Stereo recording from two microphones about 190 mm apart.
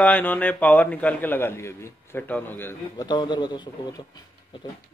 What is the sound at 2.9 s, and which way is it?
Speech, 25° left (ahead or behind).